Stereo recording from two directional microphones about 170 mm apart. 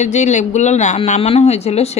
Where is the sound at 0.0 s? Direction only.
45° left (ahead or behind).